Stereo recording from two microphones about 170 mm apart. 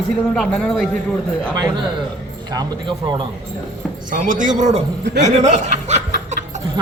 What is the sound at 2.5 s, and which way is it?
Speech, 25° right (ahead or behind).